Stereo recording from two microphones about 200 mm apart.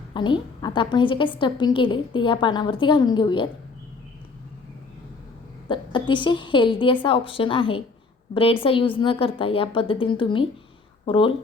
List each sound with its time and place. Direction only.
0.1 s a woman's voice: 25° left (ahead or behind)
5.6 s a woman's voice: 25° left (ahead or behind)